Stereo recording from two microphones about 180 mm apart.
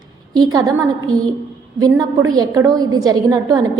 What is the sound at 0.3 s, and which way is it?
A woman's voice, 20° right (ahead or behind).